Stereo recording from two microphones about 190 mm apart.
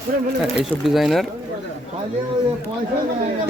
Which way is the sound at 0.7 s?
Centre (ahead or behind).